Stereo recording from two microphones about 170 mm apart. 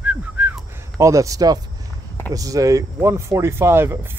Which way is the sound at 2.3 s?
20° right (ahead or behind).